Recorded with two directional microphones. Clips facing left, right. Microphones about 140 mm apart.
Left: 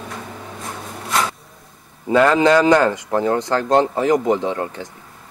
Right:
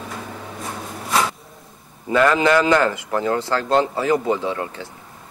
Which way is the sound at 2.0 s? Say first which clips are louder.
Left 3 dB; 30° left (ahead or behind).